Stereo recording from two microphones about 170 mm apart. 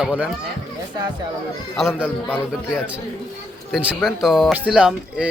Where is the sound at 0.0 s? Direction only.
10° right (ahead or behind).